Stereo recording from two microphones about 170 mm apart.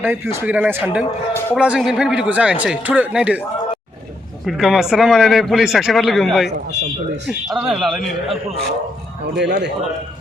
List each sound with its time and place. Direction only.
0.0 s a man's voice: 10° right (ahead or behind)
4.4 s a man's voice: centre (ahead or behind)
9.3 s a man's voice: 85° right